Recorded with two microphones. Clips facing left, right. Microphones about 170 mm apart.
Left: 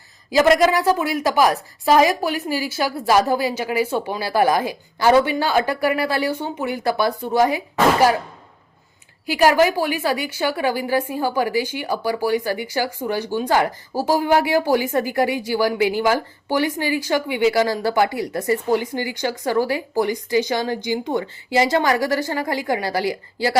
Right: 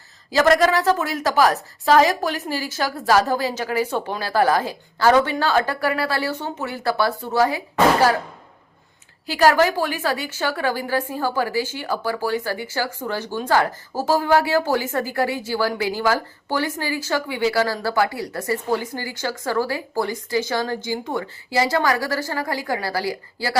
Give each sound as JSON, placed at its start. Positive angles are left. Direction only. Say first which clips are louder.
{"t": 0.3, "sound": "a woman's voice", "louder": "left 2 dB", "side_deg": 15}
{"t": 9.2, "sound": "a woman's voice", "louder": "left 1 dB", "side_deg": 15}